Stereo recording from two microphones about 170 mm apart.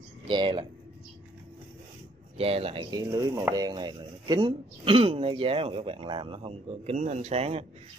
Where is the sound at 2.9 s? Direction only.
20° right (ahead or behind).